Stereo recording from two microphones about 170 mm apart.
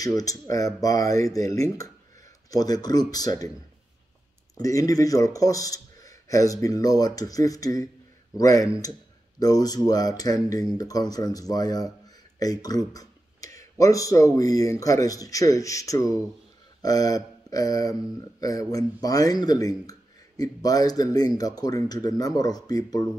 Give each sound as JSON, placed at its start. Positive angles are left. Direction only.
{"t": 0.0, "sound": "speech", "side_deg": 20}
{"t": 4.6, "sound": "speech", "side_deg": 20}